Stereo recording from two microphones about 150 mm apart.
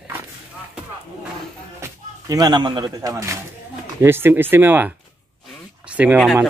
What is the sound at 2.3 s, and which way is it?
Speech, 30° right (ahead or behind).